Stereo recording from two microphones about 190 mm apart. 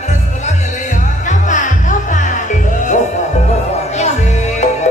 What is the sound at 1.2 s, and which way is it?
Music, 40° left (ahead or behind).